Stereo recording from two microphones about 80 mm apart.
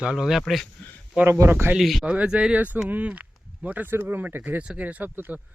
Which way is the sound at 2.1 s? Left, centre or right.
Centre.